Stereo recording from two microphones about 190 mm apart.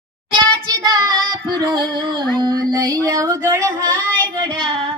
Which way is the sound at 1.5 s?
20° right (ahead or behind).